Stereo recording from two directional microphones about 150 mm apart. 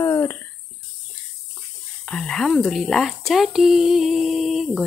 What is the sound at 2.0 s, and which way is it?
Speech, 5° left (ahead or behind).